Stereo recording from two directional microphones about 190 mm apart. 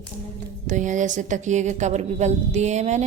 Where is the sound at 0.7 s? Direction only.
40° right (ahead or behind).